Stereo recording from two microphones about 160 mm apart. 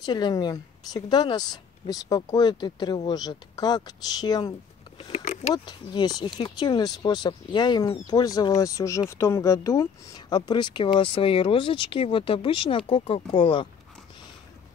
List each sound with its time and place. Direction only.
0.0 s a woman's voice: 25° left (ahead or behind)
4.9 s speech: 35° left (ahead or behind)
5.2 s a sound: 50° left (ahead or behind)
5.5 s a woman's voice: 25° left (ahead or behind)